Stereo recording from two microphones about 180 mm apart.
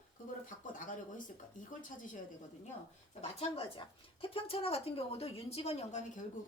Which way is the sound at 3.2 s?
35° left (ahead or behind).